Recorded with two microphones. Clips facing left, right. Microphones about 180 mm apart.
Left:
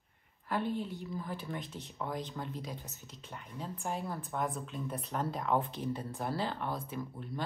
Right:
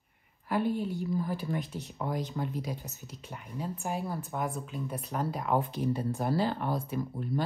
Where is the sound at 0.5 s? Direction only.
5° right (ahead or behind).